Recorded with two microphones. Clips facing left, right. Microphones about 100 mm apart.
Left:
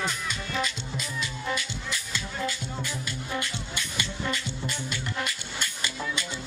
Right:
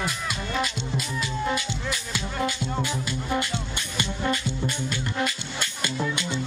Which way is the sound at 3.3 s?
55° right (ahead or behind).